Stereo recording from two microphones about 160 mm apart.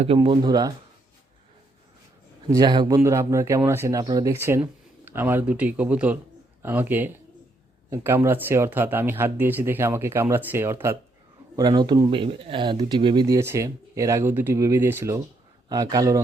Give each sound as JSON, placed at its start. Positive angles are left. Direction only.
{"t": 0.0, "sound": "speech", "side_deg": -35}
{"t": 2.5, "sound": "speech", "side_deg": -25}
{"t": 11.5, "sound": "speech", "side_deg": -25}